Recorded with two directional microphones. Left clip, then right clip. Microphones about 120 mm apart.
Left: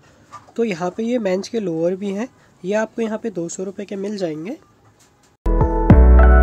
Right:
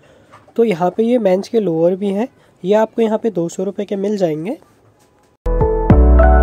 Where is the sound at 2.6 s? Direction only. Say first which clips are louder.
Right 7 dB; 35° right (ahead or behind).